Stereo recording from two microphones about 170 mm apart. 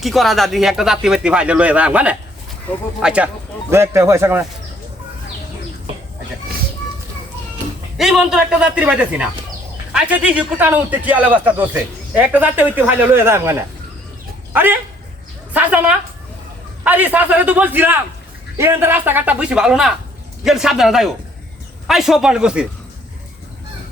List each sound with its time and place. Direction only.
0.0 s a man's voice: centre (ahead or behind)
7.9 s a man's voice: centre (ahead or behind)